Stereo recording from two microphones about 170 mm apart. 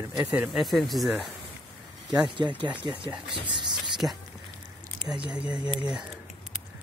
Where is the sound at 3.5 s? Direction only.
25° right (ahead or behind).